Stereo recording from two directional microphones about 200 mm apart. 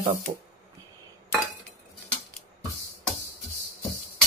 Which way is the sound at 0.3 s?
35° right (ahead or behind).